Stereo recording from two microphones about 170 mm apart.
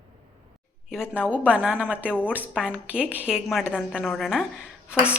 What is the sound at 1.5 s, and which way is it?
A woman's voice, 10° right (ahead or behind).